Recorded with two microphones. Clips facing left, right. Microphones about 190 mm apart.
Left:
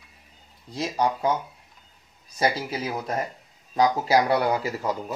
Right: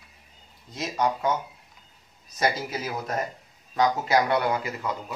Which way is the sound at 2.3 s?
30° left (ahead or behind).